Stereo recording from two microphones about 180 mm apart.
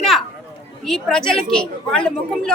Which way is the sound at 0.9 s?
Centre (ahead or behind).